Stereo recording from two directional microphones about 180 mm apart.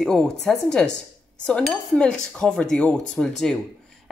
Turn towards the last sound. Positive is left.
turn(degrees=0)  # may be behind; listen again after turning